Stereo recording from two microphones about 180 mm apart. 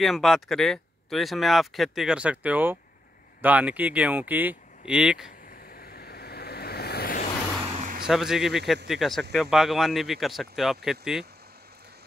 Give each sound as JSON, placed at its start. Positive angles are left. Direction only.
{"t": 0.0, "sound": "speech", "side_deg": 0}
{"t": 5.5, "sound": "waves", "side_deg": 55}
{"t": 7.8, "sound": "a sound", "side_deg": -50}
{"t": 8.1, "sound": "speech", "side_deg": 0}